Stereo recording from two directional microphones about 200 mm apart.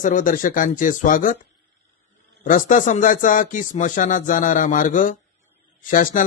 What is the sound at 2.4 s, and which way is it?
A man's voice, 40° left (ahead or behind).